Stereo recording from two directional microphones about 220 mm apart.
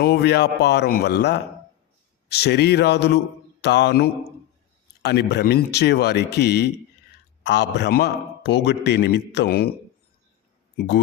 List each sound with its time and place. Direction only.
0.0 s a man's voice: 50° left (ahead or behind)
10.8 s speech: 50° left (ahead or behind)